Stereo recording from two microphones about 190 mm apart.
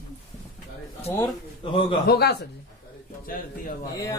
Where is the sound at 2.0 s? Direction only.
55° left (ahead or behind).